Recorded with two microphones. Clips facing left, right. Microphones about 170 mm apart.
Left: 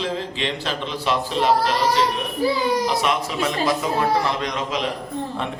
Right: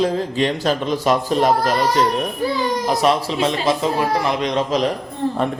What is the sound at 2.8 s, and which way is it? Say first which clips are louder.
Speech: right 4 dB; 40° right (ahead or behind).